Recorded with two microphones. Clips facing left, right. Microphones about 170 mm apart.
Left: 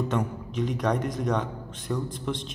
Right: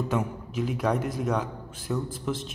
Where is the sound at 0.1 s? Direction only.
5° right (ahead or behind).